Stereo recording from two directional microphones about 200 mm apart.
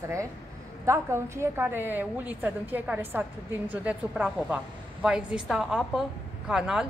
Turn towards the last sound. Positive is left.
turn(degrees=-5)  # may be behind; listen again after turning